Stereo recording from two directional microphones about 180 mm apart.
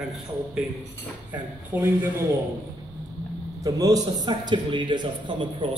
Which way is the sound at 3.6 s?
20° right (ahead or behind).